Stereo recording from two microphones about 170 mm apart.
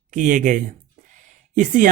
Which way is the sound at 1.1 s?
50° right (ahead or behind).